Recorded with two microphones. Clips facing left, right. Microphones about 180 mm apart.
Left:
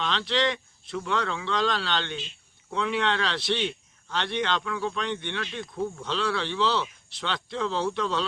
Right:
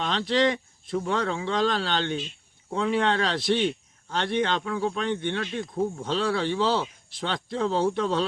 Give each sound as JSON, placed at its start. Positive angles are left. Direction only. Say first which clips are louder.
{"t": 0.0, "sound": "speech", "louder": "right 3 dB", "side_deg": -45}